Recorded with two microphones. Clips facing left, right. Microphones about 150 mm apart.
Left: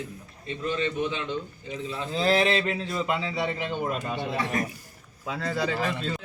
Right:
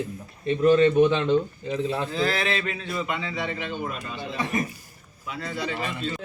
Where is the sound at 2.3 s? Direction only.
30° left (ahead or behind).